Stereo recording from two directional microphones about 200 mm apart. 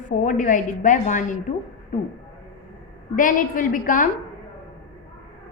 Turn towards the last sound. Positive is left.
turn(degrees=40)  # may be behind; listen again after turning